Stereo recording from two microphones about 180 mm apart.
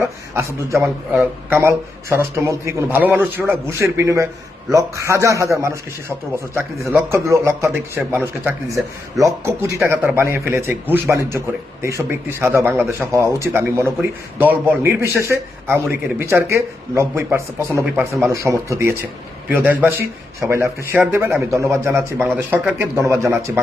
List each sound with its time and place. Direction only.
0.0 s a man's voice: 15° right (ahead or behind)